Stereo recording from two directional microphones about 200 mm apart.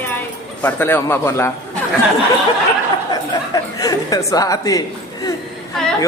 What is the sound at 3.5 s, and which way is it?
Chuckle, 15° left (ahead or behind).